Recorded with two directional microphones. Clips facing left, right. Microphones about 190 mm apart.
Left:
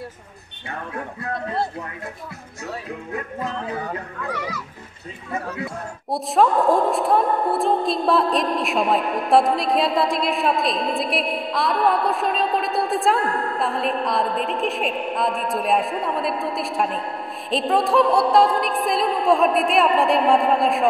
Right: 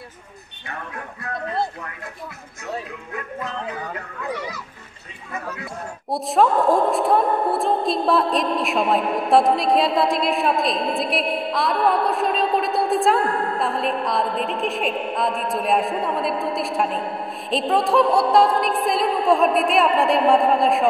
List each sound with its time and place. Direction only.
0.7 s speech: 30° left (ahead or behind)
3.1 s speech: 30° left (ahead or behind)
6.0 s a woman's voice: centre (ahead or behind)